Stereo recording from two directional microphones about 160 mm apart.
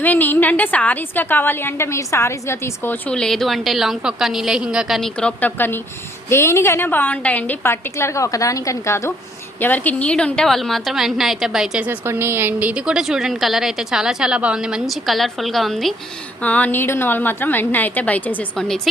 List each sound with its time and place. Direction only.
0.0 s a woman's voice: 10° left (ahead or behind)